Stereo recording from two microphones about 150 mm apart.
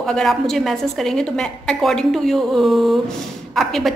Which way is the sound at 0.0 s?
5° left (ahead or behind).